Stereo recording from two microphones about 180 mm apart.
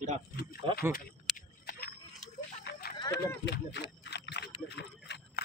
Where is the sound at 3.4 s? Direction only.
70° left (ahead or behind).